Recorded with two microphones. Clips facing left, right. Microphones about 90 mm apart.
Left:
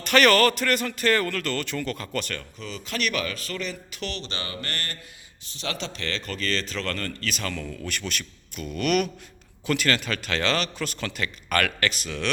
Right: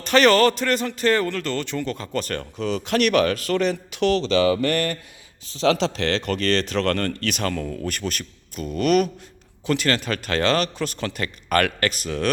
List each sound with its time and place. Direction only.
0.0 s a man's voice: 25° right (ahead or behind)
2.6 s speech: 85° right
5.6 s a man's voice: 90° right; by 12.3 s 45° right (ahead or behind)